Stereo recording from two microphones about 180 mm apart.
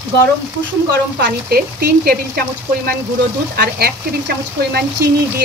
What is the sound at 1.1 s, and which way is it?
Speech, 65° right (ahead or behind).